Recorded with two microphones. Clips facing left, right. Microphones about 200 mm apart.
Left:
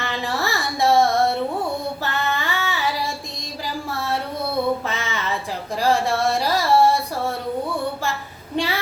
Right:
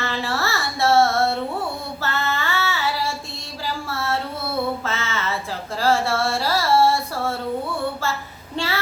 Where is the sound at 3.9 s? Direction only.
15° left (ahead or behind).